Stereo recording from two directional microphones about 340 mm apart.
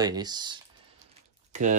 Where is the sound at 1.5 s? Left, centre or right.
Right.